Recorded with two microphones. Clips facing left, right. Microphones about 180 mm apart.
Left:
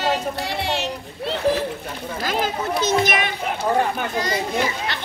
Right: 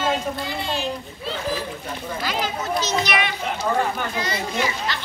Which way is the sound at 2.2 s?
50° left (ahead or behind).